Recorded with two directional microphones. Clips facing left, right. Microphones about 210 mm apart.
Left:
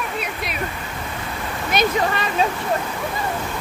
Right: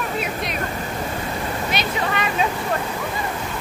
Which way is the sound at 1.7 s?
35° left (ahead or behind).